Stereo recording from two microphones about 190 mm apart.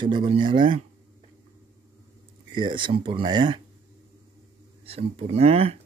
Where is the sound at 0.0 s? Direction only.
25° right (ahead or behind).